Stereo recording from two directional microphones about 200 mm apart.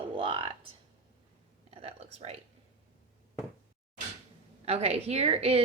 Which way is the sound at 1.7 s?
30° right (ahead or behind).